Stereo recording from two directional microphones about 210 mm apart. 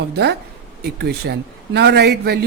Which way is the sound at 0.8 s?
50° right (ahead or behind).